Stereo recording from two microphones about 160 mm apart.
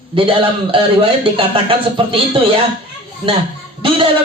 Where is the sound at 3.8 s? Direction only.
35° right (ahead or behind).